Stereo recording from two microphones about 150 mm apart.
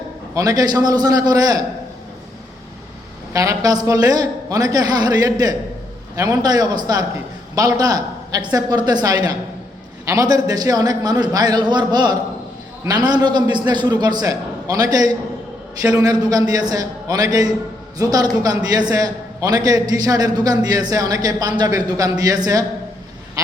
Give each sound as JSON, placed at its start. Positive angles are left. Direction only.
{"t": 0.3, "sound": "a man's voice", "side_deg": -25}
{"t": 3.3, "sound": "a man's voice", "side_deg": -20}